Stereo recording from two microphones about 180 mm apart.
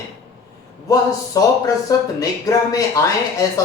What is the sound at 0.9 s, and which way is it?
Speech, 20° left (ahead or behind).